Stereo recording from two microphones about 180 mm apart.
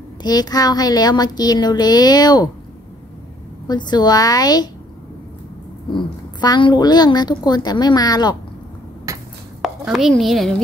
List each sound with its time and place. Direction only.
0.2 s a woman's voice: 20° left (ahead or behind)
3.6 s a woman's voice: 25° left (ahead or behind)
5.9 s a woman's voice: 25° left (ahead or behind)
9.1 s a sound: 20° right (ahead or behind)
9.6 s chopping: centre (ahead or behind)